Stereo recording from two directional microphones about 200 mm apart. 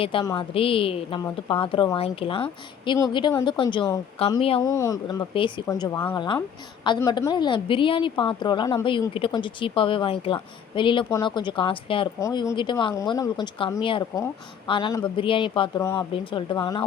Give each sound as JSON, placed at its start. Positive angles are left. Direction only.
{"t": 0.0, "sound": "a woman's voice", "side_deg": 25}
{"t": 4.6, "sound": "a woman's voice", "side_deg": 15}
{"t": 15.8, "sound": "a woman's voice", "side_deg": 15}